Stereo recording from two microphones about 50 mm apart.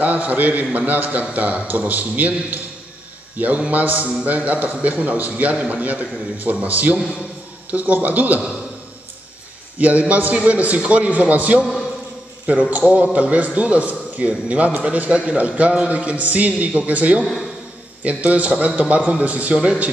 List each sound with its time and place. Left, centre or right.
0.0 s a man's voice: right
9.8 s a man's voice: right